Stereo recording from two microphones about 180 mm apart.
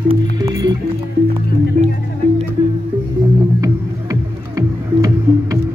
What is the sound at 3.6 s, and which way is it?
Music, 20° right (ahead or behind).